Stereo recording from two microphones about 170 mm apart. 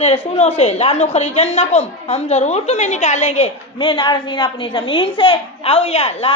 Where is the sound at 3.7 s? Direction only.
25° left (ahead or behind).